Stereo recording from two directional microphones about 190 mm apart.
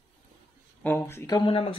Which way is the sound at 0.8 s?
10° left (ahead or behind).